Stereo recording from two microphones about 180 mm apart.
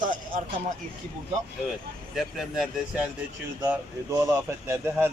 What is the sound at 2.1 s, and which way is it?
Speech, 5° right (ahead or behind).